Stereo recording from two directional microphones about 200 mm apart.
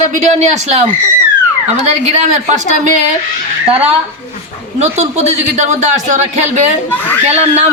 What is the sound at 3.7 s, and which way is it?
Speech, 30° right (ahead or behind).